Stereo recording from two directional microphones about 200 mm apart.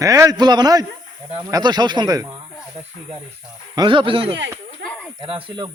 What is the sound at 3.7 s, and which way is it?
Speech, 25° right (ahead or behind).